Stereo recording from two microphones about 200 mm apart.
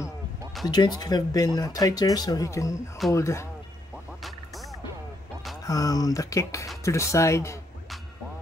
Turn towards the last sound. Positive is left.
turn(degrees=15)  # may be behind; listen again after turning